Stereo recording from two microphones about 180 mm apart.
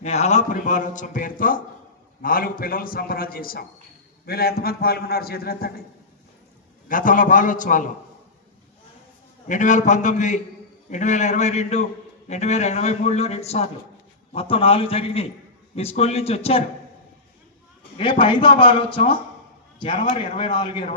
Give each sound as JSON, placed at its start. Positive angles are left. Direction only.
{"t": 0.0, "sound": "a man's voice", "side_deg": 35}
{"t": 6.8, "sound": "a man's voice", "side_deg": 50}
{"t": 9.5, "sound": "a man's voice", "side_deg": 45}
{"t": 17.9, "sound": "a man's voice", "side_deg": 25}